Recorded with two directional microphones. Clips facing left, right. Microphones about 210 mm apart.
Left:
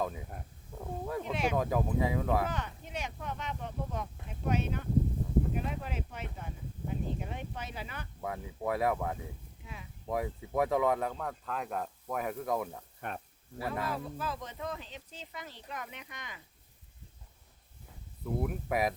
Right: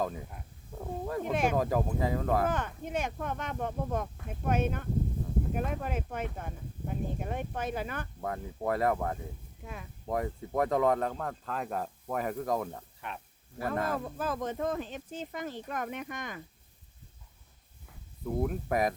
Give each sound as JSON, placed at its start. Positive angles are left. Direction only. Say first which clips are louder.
{"t": 0.8, "sound": "wild animals", "louder": "right 2 dB", "side_deg": 0}
{"t": 1.2, "sound": "speech", "louder": "right 5 dB", "side_deg": -50}
{"t": 1.5, "sound": "speech", "louder": "right 1 dB", "side_deg": 0}
{"t": 2.5, "sound": "speech", "louder": "right 6 dB", "side_deg": -50}
{"t": 8.2, "sound": "speech", "louder": "right 1 dB", "side_deg": 5}
{"t": 9.6, "sound": "speech", "louder": "right 5 dB", "side_deg": -50}
{"t": 10.1, "sound": "speech", "louder": "right 2 dB", "side_deg": 5}
{"t": 13.0, "sound": "speech", "louder": "left 2 dB", "side_deg": 50}
{"t": 13.8, "sound": "speech", "louder": "right 4 dB", "side_deg": -50}
{"t": 18.4, "sound": "speech", "louder": "right 2 dB", "side_deg": 5}